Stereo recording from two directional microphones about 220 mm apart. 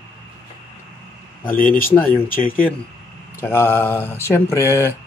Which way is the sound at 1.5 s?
40° left (ahead or behind).